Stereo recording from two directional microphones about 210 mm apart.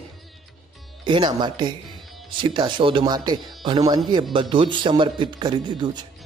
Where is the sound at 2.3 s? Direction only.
25° right (ahead or behind).